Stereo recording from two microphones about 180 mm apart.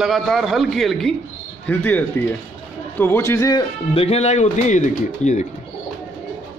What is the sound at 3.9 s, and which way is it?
Speech, 35° left (ahead or behind).